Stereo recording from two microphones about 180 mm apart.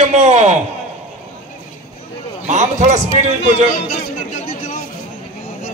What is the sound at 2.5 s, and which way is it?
Speech, 40° right (ahead or behind).